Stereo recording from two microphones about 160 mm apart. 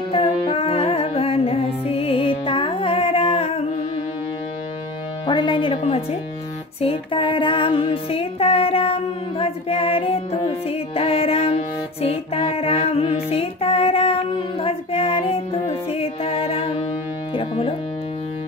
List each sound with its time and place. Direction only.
0.1 s music: 35° left (ahead or behind)
5.2 s music: 30° left (ahead or behind)